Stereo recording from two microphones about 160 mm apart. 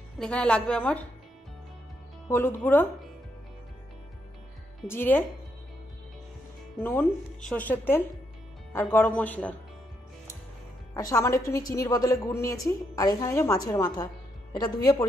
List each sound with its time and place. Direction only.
0.2 s speech: 5° left (ahead or behind)
2.2 s speech: 15° left (ahead or behind)
4.8 s speech: 15° left (ahead or behind)
6.8 s speech: 15° left (ahead or behind)
11.0 s a woman's voice: 20° left (ahead or behind)